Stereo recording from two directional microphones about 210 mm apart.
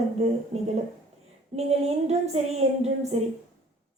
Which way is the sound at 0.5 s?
30° right (ahead or behind).